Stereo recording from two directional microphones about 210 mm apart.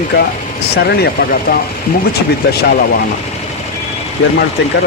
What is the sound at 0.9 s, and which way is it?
Speech, 50° left (ahead or behind).